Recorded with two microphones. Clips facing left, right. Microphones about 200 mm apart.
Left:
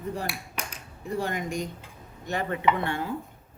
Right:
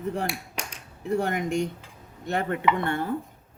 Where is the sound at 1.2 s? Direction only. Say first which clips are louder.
Right 4 dB; 60° right (ahead or behind).